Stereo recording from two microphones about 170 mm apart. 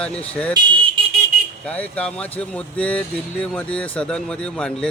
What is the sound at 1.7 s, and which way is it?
Speech, 5° left (ahead or behind).